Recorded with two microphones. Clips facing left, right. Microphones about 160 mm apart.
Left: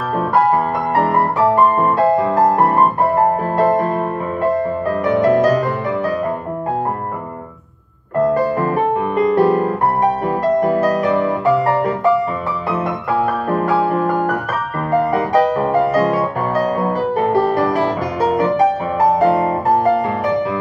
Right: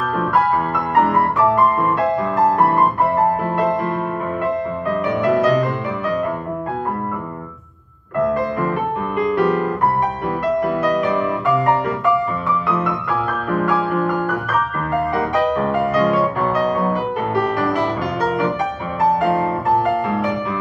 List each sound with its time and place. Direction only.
0.9 s music: 35° left (ahead or behind)
5.0 s music: 40° left (ahead or behind)
8.4 s music: 35° left (ahead or behind)
19.1 s music: 40° left (ahead or behind)